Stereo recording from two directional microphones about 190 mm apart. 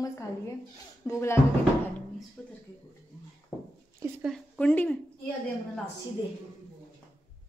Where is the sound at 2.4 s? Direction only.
5° left (ahead or behind).